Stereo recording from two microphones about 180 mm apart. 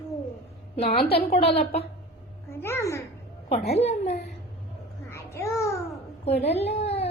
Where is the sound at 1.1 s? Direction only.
35° left (ahead or behind).